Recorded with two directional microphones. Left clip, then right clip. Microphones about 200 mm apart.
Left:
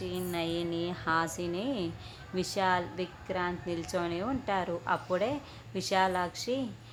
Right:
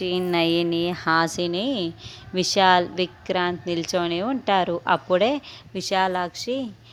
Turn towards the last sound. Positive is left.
turn(degrees=-35)  # may be behind; listen again after turning